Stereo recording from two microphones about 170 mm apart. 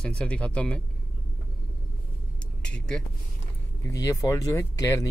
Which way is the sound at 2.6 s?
5° left (ahead or behind).